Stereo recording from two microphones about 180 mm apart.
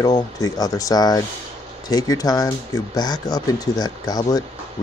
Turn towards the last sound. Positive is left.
turn(degrees=20)  # may be behind; listen again after turning